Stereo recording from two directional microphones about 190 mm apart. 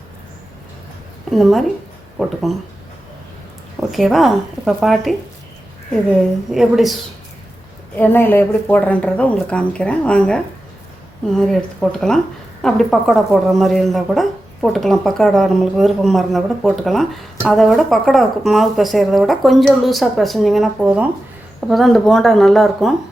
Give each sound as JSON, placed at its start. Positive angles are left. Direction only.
{"t": 1.3, "sound": "speech", "side_deg": 0}
{"t": 3.8, "sound": "speech", "side_deg": 0}
{"t": 7.9, "sound": "speech", "side_deg": 10}